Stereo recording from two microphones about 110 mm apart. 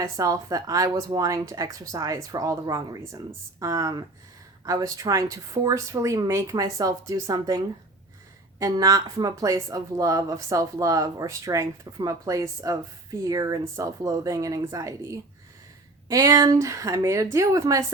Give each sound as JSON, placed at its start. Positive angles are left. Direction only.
{"t": 0.0, "sound": "speech", "side_deg": -30}